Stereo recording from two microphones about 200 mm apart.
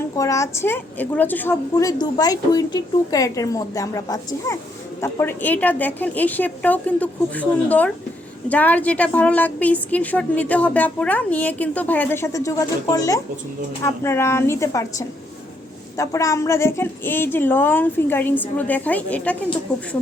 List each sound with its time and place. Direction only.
0.2 s a woman's voice: 15° left (ahead or behind)
1.7 s a woman's voice: 20° left (ahead or behind)